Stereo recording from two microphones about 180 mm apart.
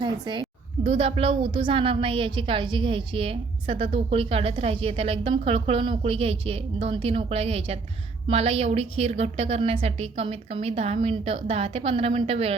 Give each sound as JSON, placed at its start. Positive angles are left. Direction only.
{"t": 0.0, "sound": "a woman's voice", "side_deg": -25}